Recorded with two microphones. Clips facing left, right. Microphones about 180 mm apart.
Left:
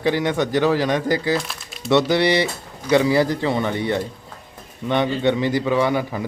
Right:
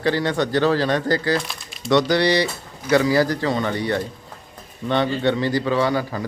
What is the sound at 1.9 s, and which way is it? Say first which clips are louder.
Speech: even; 20° left (ahead or behind).